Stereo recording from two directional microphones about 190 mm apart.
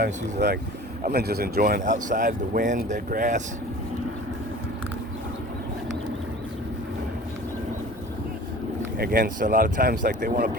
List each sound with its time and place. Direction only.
0.0 s speech: 55° right (ahead or behind)
9.0 s speech: 50° right (ahead or behind)